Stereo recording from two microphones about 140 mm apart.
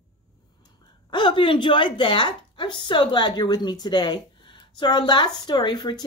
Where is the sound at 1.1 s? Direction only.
35° left (ahead or behind).